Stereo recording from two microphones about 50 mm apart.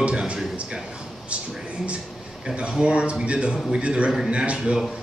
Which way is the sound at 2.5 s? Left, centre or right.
Centre.